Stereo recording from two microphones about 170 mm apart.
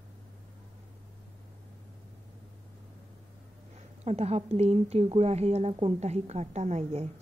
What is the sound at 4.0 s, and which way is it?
A woman's voice, 40° right (ahead or behind).